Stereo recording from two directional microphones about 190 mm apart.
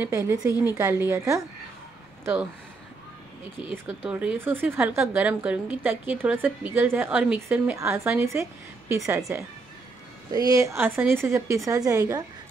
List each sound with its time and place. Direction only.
0.0 s speech: 15° right (ahead or behind)
3.6 s speech: 10° right (ahead or behind)
10.3 s speech: 20° right (ahead or behind)